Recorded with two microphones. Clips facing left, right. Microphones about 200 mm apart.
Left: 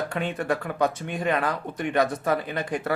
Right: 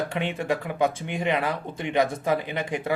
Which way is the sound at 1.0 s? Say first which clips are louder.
Even; 20° right (ahead or behind).